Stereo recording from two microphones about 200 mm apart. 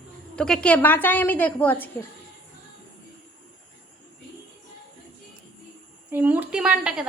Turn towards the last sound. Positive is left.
turn(degrees=-5)  # may be behind; listen again after turning